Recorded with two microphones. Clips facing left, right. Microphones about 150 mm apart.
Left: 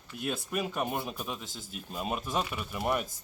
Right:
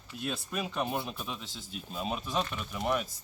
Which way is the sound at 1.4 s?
45° left (ahead or behind).